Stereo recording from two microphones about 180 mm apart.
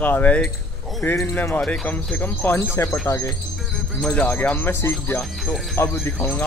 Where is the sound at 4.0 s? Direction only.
5° left (ahead or behind).